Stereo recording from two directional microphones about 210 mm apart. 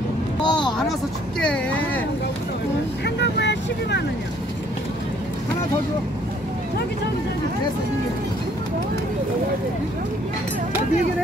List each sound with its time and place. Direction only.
0.4 s a sound: 20° left (ahead or behind)
1.4 s speech: 5° left (ahead or behind)
3.2 s speech: 55° left (ahead or behind)